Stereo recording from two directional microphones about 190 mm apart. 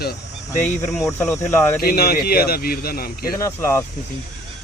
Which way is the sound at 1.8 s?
50° left (ahead or behind).